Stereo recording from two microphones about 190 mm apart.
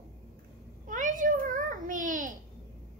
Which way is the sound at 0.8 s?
45° right (ahead or behind).